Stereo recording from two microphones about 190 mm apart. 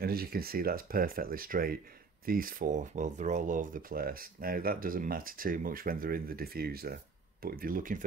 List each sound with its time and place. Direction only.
0.0 s speech: 55° right (ahead or behind)